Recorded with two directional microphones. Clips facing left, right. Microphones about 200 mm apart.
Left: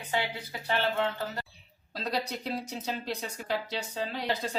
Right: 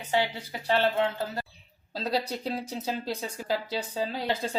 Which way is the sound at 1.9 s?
30° right (ahead or behind).